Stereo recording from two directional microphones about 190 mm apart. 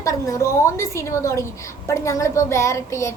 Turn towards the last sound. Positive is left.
turn(degrees=15)  # may be behind; listen again after turning